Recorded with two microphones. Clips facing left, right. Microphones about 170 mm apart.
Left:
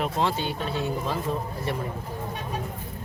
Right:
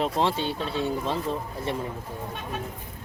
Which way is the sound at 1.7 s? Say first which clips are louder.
Right 1 dB; 25° right (ahead or behind).